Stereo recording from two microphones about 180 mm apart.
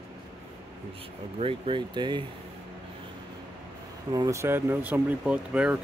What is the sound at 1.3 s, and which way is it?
Speech, 30° right (ahead or behind).